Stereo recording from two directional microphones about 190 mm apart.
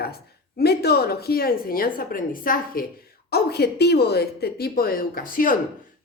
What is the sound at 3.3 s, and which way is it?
Speech, 55° left (ahead or behind).